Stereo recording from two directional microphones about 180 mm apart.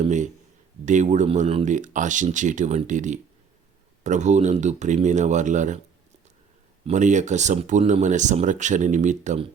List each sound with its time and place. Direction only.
0.0 s speech: 40° right (ahead or behind)
6.8 s speech: 40° right (ahead or behind)